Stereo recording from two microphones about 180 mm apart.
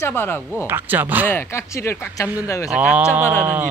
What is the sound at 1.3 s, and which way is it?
Speech, 15° left (ahead or behind).